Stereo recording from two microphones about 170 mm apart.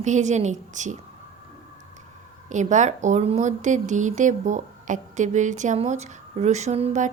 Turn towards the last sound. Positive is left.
turn(degrees=-40)  # may be behind; listen again after turning